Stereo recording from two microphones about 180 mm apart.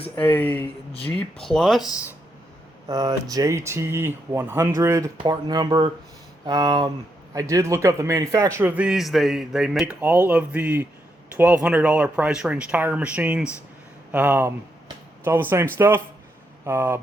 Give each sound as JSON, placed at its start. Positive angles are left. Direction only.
{"t": 0.2, "sound": "speech", "side_deg": 10}
{"t": 2.9, "sound": "a man's voice", "side_deg": -20}